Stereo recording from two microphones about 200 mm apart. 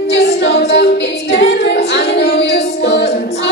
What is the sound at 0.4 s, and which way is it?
Music, 60° left (ahead or behind).